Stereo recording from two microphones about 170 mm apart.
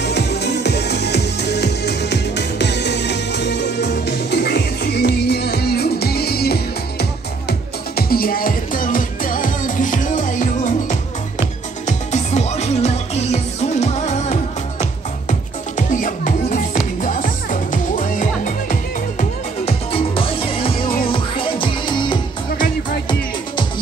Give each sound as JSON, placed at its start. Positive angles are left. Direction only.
{"t": 0.0, "sound": "music", "side_deg": 80}
{"t": 12.1, "sound": "music", "side_deg": 45}
{"t": 19.9, "sound": "music", "side_deg": 35}